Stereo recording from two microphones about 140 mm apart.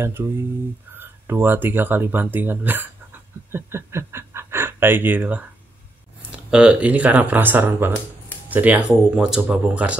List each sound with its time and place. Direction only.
0.2 s speech: 20° right (ahead or behind)